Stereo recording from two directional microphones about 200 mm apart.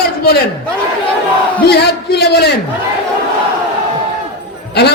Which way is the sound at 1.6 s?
55° left (ahead or behind).